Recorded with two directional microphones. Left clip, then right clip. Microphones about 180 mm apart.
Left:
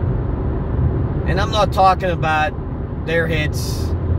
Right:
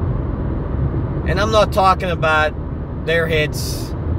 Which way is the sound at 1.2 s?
35° right (ahead or behind).